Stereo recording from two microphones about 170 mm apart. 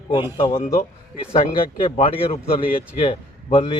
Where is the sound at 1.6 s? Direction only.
30° left (ahead or behind).